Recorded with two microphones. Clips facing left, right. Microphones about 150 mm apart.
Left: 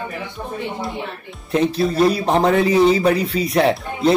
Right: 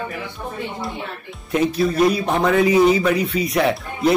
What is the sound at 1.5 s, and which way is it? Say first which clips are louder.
Speech: left 1 dB; 30° left (ahead or behind).